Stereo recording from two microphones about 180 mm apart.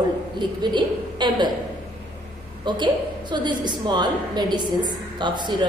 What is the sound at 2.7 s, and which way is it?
A woman's voice, 25° right (ahead or behind).